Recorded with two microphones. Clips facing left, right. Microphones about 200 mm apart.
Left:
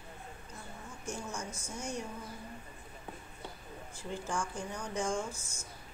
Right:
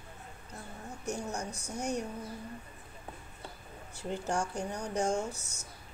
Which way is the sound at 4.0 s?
65° right (ahead or behind).